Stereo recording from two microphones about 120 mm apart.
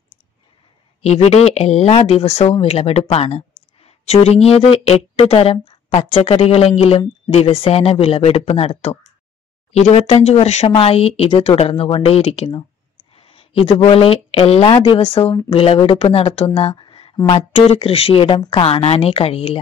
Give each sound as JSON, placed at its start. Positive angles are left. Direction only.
{"t": 1.0, "sound": "speech", "side_deg": 60}
{"t": 10.7, "sound": "speech", "side_deg": 55}
{"t": 17.3, "sound": "speech", "side_deg": 60}